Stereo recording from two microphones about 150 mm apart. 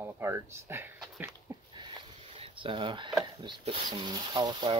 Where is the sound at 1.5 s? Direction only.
15° right (ahead or behind).